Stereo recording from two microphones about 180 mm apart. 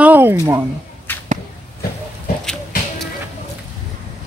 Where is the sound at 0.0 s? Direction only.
10° right (ahead or behind).